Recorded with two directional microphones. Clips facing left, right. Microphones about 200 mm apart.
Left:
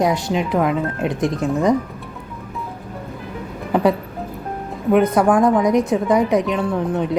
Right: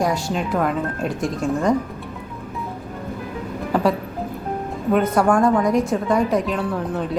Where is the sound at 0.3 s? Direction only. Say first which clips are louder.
Left 3 dB; 15° left (ahead or behind).